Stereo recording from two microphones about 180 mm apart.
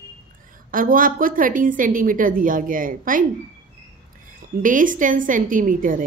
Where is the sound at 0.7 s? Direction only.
50° right (ahead or behind).